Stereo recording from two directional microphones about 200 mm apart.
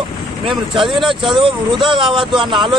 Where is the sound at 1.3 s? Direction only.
25° right (ahead or behind).